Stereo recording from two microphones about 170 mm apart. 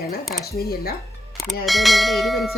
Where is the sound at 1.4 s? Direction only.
Centre (ahead or behind).